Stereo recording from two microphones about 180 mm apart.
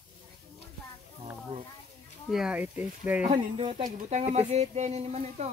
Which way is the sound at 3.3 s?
30° right (ahead or behind).